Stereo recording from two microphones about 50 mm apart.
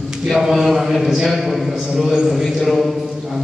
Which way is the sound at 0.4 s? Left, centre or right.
Centre.